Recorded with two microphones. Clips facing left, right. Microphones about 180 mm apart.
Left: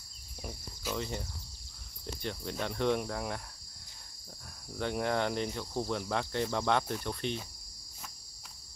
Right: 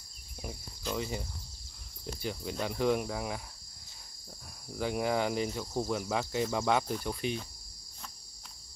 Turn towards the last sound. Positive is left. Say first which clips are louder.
# right 2 dB
turn(degrees=-5)  # may be behind; listen again after turning